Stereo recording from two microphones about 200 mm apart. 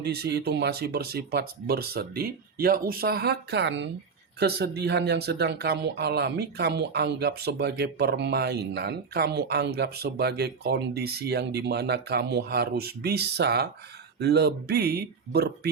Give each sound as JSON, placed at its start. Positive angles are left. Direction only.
{"t": 0.0, "sound": "speech", "side_deg": -55}